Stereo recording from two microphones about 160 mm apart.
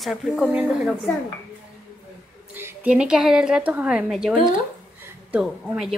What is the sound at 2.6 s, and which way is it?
A woman's voice, 10° right (ahead or behind).